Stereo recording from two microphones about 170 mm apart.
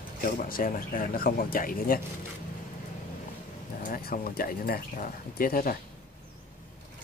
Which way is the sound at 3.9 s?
60° left (ahead or behind).